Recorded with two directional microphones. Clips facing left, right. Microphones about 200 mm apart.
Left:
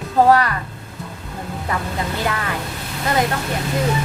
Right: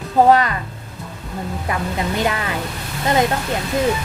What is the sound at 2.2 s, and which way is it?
Speech, 20° right (ahead or behind).